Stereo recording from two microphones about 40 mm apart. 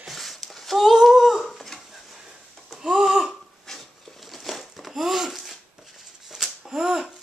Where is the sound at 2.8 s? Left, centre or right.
Centre.